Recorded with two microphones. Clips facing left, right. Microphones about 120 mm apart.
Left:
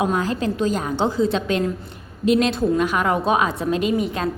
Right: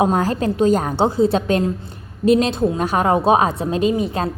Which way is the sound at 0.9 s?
30° right (ahead or behind).